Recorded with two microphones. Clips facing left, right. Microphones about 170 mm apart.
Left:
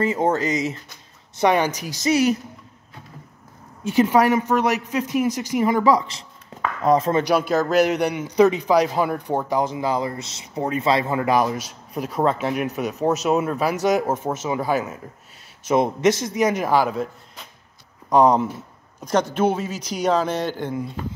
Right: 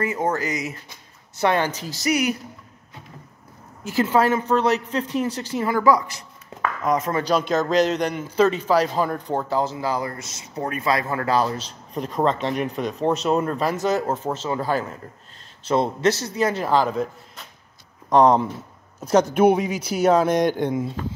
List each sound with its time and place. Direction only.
0.0 s a man's voice: 25° left (ahead or behind)
3.8 s a man's voice: 20° left (ahead or behind)
7.2 s a man's voice: 10° left (ahead or behind)
18.1 s speech: centre (ahead or behind); by 20.9 s 20° right (ahead or behind)